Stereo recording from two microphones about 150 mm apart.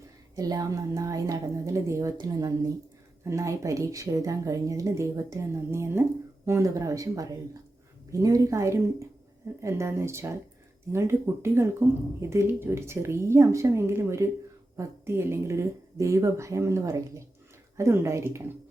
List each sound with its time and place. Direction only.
0.3 s a woman's voice: 25° right (ahead or behind)